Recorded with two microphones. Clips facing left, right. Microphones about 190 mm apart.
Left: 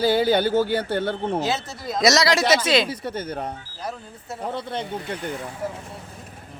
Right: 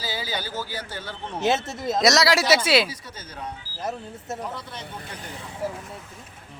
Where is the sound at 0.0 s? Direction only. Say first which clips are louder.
Left 13 dB; 60° left (ahead or behind).